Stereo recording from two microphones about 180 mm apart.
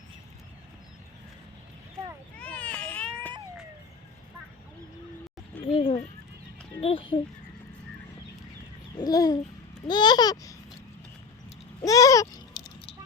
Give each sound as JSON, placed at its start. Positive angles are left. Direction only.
{"t": 2.4, "sound": "baby cry", "side_deg": 5}
{"t": 5.7, "sound": "a sound", "side_deg": 30}
{"t": 6.8, "sound": "a child's voice", "side_deg": 30}
{"t": 9.0, "sound": "babbling", "side_deg": 20}
{"t": 11.9, "sound": "babbling", "side_deg": 20}